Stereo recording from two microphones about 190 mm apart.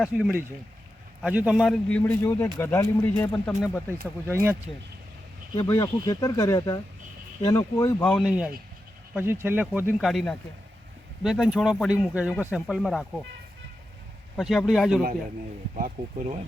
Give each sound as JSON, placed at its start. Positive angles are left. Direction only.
{"t": 0.0, "sound": "speech", "side_deg": -5}
{"t": 4.3, "sound": "speech", "side_deg": -10}
{"t": 5.5, "sound": "speech", "side_deg": 20}
{"t": 8.0, "sound": "speech", "side_deg": 5}
{"t": 10.0, "sound": "speech", "side_deg": 0}
{"t": 14.3, "sound": "speech", "side_deg": 0}
{"t": 15.7, "sound": "speech", "side_deg": -40}